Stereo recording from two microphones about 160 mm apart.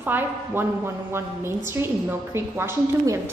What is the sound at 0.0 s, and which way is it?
A woman's voice, 10° right (ahead or behind).